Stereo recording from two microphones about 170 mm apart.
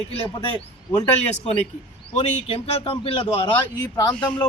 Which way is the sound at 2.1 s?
35° left (ahead or behind).